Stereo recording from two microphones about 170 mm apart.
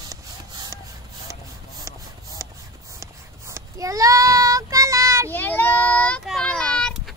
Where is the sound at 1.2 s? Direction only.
20° right (ahead or behind).